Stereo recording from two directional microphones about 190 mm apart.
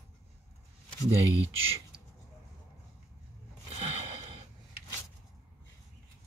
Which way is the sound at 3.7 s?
30° right (ahead or behind).